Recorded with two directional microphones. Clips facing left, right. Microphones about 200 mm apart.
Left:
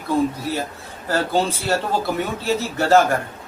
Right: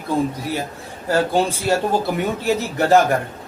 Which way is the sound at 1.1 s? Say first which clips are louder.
Right 2 dB; 15° right (ahead or behind).